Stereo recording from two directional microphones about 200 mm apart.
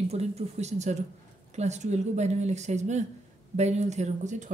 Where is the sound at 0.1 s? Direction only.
30° right (ahead or behind).